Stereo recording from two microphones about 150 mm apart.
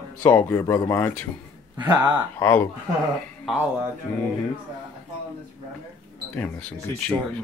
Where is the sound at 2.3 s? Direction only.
15° left (ahead or behind).